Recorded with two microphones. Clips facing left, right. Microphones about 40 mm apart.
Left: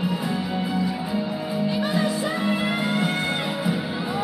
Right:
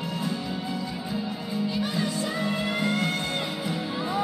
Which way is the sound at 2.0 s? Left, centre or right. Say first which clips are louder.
Left 4 dB; centre.